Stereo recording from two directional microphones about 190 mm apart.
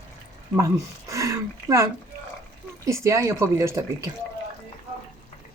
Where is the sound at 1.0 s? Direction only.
15° right (ahead or behind).